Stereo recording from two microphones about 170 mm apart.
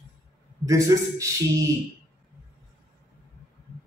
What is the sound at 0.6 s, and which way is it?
A man's voice, 20° right (ahead or behind).